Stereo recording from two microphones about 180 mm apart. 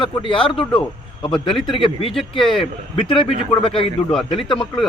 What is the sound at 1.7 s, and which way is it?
A man's voice, 30° left (ahead or behind).